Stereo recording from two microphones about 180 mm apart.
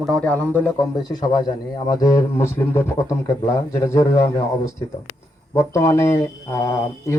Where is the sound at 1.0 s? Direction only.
20° left (ahead or behind).